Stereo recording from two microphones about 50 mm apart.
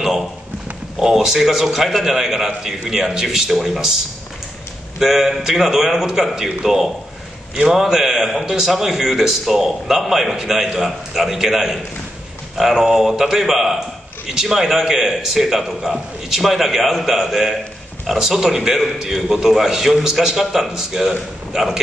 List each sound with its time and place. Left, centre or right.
0.9 s a man's voice: centre
4.9 s a man's voice: centre